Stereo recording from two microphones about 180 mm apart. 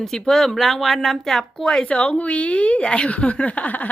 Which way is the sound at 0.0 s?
Centre (ahead or behind).